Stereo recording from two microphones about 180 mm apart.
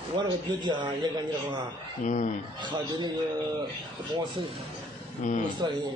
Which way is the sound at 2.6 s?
25° right (ahead or behind).